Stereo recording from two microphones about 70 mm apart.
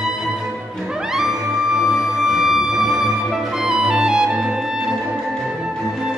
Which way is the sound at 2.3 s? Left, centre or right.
Centre.